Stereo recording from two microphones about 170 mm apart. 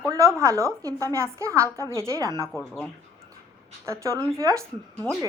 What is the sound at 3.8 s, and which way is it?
Speech, 15° right (ahead or behind).